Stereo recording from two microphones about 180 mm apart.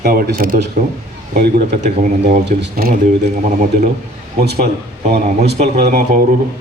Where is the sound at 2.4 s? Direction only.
65° right (ahead or behind).